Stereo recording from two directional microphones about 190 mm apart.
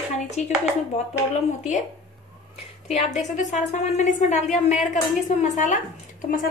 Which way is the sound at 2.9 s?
35° left (ahead or behind).